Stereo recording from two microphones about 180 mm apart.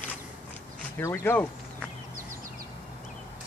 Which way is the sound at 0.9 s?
15° left (ahead or behind).